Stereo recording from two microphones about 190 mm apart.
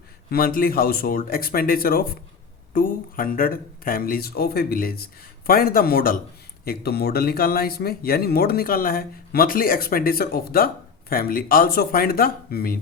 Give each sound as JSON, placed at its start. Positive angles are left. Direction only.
{"t": 0.3, "sound": "speech", "side_deg": 50}